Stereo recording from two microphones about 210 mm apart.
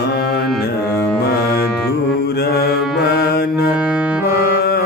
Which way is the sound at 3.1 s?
50° left (ahead or behind).